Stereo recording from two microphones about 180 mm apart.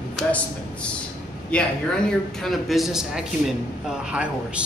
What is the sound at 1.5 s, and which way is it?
A man's voice, 5° left (ahead or behind).